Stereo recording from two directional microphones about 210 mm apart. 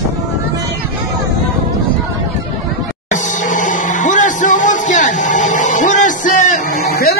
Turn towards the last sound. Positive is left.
turn(degrees=40)  # may be behind; listen again after turning